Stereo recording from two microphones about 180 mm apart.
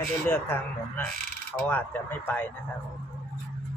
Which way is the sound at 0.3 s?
10° left (ahead or behind).